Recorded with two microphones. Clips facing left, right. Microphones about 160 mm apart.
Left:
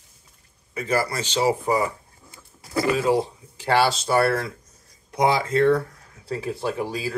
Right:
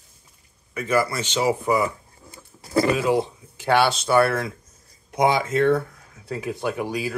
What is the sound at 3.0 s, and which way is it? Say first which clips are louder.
Speech: even; 35° left (ahead or behind).